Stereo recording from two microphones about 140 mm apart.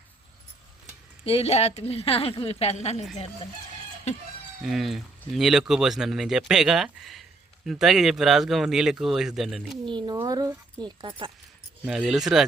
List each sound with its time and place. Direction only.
1.2 s a woman's voice: 45° left (ahead or behind)
4.6 s speech: centre (ahead or behind)
9.8 s speech: 35° right (ahead or behind)
11.9 s speech: 5° right (ahead or behind)